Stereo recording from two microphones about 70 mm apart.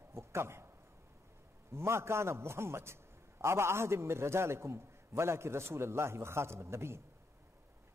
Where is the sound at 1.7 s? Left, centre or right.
Right.